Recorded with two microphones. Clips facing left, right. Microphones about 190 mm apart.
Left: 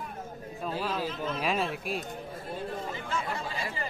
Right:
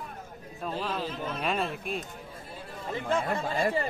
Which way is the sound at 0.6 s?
5° left (ahead or behind).